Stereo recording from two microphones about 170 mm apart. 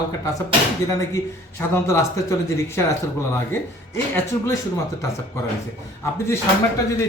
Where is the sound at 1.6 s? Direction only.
15° left (ahead or behind).